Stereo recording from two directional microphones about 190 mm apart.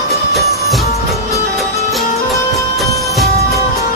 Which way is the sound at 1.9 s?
Centre (ahead or behind).